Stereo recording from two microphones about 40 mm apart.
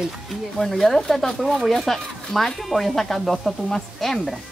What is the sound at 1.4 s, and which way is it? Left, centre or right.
Speech, centre.